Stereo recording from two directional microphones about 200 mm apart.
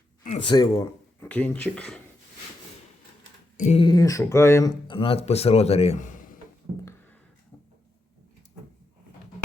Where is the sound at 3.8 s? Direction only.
15° left (ahead or behind); by 6.3 s 40° left (ahead or behind).